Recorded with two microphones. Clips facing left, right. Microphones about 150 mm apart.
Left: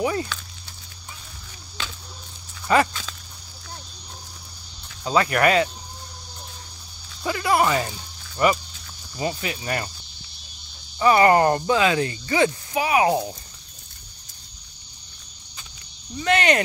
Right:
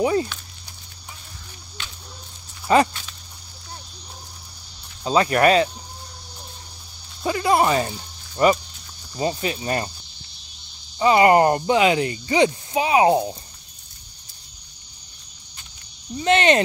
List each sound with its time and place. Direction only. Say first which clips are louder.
0.0 s speech: right 4 dB; 25° right (ahead or behind)
2.7 s speech: right 2 dB; 25° right (ahead or behind)
5.0 s speech: right 2 dB; 25° right (ahead or behind)
7.2 s speech: right 2 dB; 25° right (ahead or behind)
11.0 s speech: right 1 dB; 20° right (ahead or behind)
16.2 s speech: right 3 dB; 25° right (ahead or behind)